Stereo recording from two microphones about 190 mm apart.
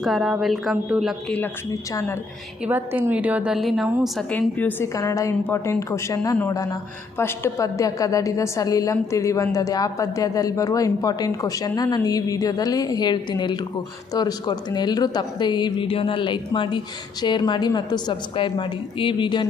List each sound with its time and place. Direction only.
0.0 s speech: centre (ahead or behind)
1.9 s a woman's voice: 15° left (ahead or behind)
2.6 s a woman's voice: 10° right (ahead or behind)
4.2 s a woman's voice: 10° left (ahead or behind); by 19.5 s 25° left (ahead or behind)